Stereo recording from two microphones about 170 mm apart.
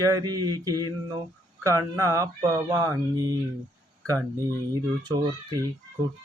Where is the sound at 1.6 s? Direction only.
15° right (ahead or behind).